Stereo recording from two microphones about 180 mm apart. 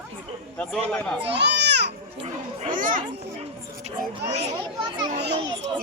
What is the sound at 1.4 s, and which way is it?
Baby cry, 70° right (ahead or behind).